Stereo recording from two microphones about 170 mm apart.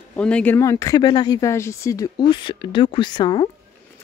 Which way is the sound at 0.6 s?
20° left (ahead or behind).